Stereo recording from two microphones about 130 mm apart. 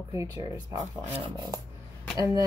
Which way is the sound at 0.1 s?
25° right (ahead or behind).